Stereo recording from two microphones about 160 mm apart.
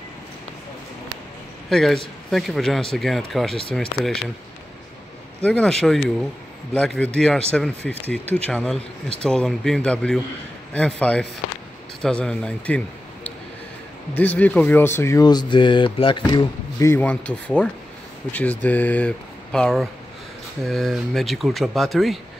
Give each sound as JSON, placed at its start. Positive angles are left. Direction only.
{"t": 1.7, "sound": "speech", "side_deg": 0}
{"t": 5.4, "sound": "a man's voice", "side_deg": 5}
{"t": 16.9, "sound": "speech", "side_deg": 10}